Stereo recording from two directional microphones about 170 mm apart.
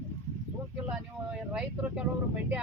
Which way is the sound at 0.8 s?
5° right (ahead or behind).